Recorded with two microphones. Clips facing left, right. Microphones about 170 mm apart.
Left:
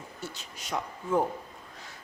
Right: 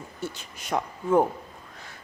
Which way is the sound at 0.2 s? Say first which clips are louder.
Right 7 dB; 55° right (ahead or behind).